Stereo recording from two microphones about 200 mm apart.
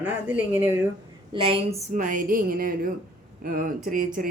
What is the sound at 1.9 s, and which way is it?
Speech, 40° right (ahead or behind).